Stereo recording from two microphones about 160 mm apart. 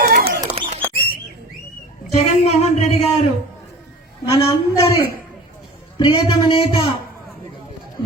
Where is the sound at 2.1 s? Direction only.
40° left (ahead or behind).